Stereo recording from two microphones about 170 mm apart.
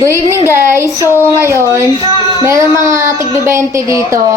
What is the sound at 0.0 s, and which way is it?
Speech, 15° right (ahead or behind).